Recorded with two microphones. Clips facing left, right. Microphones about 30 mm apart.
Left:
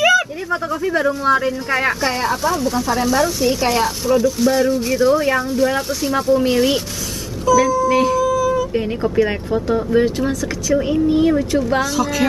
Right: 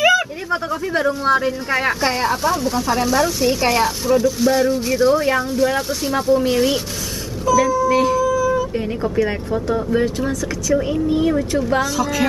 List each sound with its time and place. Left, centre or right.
0.7 s speech: centre
7.4 s speech: centre
7.9 s music: centre
8.7 s speech: centre
10.0 s speech: centre